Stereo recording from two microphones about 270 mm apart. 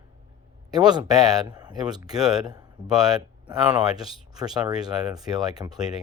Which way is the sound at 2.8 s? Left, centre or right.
Centre.